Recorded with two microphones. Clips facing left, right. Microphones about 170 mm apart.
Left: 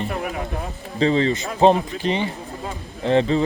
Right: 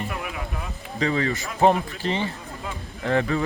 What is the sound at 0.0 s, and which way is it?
Music, 40° left (ahead or behind).